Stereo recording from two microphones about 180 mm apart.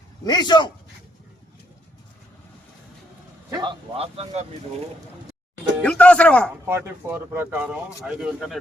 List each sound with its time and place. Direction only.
0.3 s speech: 25° left (ahead or behind)
3.5 s speech: 25° right (ahead or behind)
5.8 s speech: 5° left (ahead or behind)
6.7 s speech: 15° right (ahead or behind)